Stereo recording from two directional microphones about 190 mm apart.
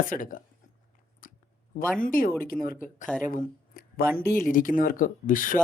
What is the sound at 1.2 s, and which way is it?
Chewing, 45° left (ahead or behind).